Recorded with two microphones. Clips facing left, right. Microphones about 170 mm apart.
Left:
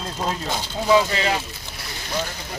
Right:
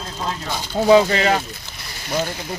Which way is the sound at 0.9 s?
40° right (ahead or behind).